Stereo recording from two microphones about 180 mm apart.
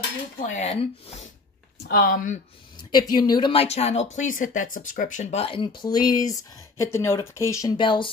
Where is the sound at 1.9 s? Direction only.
55° left (ahead or behind).